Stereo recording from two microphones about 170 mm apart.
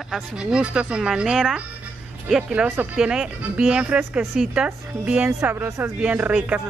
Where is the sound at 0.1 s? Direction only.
5° right (ahead or behind).